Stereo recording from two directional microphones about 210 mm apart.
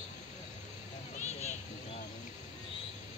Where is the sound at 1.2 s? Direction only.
35° left (ahead or behind).